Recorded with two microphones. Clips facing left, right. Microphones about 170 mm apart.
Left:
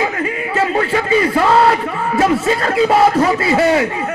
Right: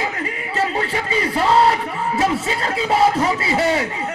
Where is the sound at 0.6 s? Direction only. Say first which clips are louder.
Left 5 dB; 60° left (ahead or behind).